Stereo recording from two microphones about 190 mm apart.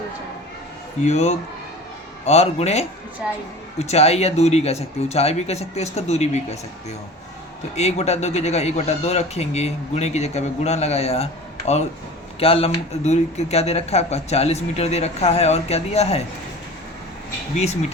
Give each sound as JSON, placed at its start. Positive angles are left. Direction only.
{"t": 1.0, "sound": "speech", "side_deg": 35}
{"t": 7.8, "sound": "speech", "side_deg": 35}
{"t": 17.6, "sound": "speech", "side_deg": 35}